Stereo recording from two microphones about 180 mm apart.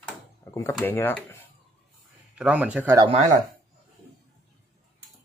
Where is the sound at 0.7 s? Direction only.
10° left (ahead or behind).